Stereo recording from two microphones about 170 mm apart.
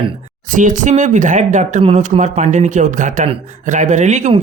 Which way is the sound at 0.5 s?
50° right (ahead or behind).